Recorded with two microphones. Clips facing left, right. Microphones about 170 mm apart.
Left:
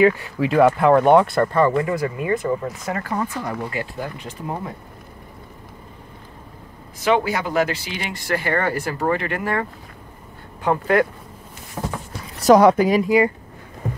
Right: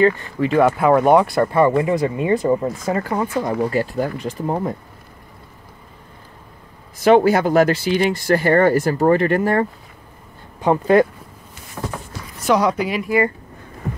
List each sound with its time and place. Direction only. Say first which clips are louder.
0.0 s speech: even; 5° left (ahead or behind); by 3.5 s 15° right (ahead or behind)
4.0 s speech: right 7 dB; 45° right (ahead or behind)
7.1 s speech: right 7 dB; 45° right (ahead or behind)
10.6 s speech: right 4 dB; 20° right (ahead or behind)
11.8 s a sound: even; 15° left (ahead or behind)
12.4 s speech: left 5 dB; 45° left (ahead or behind)